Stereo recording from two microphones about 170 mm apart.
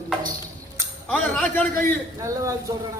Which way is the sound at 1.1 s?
10° left (ahead or behind).